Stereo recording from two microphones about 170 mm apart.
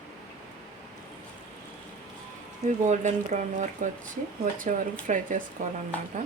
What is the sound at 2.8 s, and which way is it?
Speech, 45° right (ahead or behind).